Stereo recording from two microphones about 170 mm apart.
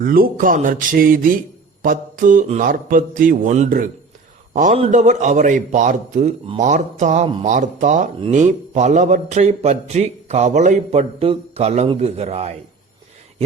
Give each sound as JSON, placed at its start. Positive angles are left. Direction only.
{"t": 0.0, "sound": "speech", "side_deg": -55}
{"t": 1.8, "sound": "mantra", "side_deg": -55}
{"t": 2.6, "sound": "a man's voice", "side_deg": -55}